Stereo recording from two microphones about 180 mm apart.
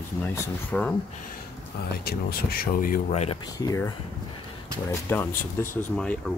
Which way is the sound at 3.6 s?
20° left (ahead or behind).